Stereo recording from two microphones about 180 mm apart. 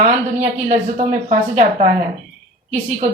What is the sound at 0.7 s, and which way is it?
Speech, 40° right (ahead or behind).